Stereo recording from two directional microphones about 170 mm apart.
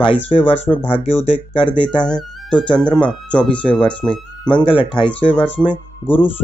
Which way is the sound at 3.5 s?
30° left (ahead or behind).